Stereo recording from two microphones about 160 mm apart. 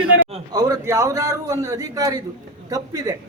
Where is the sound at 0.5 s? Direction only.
20° right (ahead or behind).